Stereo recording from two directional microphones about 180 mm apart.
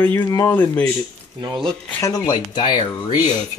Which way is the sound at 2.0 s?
20° left (ahead or behind).